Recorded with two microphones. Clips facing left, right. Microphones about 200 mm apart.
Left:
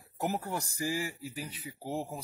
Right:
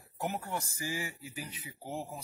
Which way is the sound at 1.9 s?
Centre (ahead or behind).